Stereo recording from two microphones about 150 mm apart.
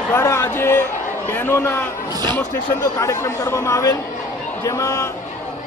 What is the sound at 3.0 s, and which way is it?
Speech, 20° left (ahead or behind).